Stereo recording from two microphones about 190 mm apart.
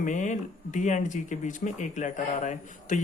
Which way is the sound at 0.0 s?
40° left (ahead or behind).